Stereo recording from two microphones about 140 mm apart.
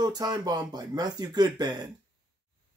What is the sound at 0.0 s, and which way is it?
Speech, 30° right (ahead or behind).